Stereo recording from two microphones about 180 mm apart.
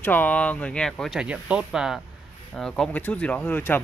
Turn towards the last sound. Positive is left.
turn(degrees=10)  # may be behind; listen again after turning